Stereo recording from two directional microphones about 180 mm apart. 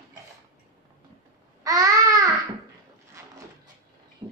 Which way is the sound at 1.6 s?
20° right (ahead or behind).